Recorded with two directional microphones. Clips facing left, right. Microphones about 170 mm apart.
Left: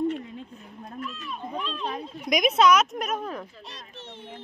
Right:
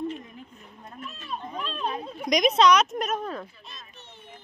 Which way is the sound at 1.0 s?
30° right (ahead or behind).